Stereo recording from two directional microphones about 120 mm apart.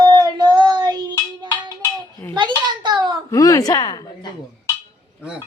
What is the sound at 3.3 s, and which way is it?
Speech, 30° left (ahead or behind).